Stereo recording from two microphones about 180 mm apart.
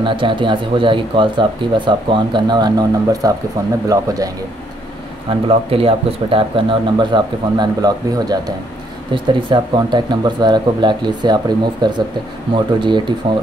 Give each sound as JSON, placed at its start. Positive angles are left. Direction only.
{"t": 0.0, "sound": "speech", "side_deg": -25}
{"t": 5.5, "sound": "speech", "side_deg": -30}